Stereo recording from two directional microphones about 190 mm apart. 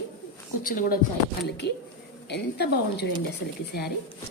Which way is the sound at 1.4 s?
60° left (ahead or behind).